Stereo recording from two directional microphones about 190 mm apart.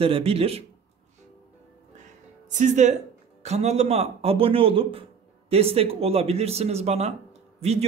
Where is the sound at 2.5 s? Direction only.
40° right (ahead or behind).